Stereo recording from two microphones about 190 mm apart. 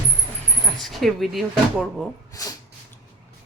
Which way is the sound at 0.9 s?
Centre (ahead or behind).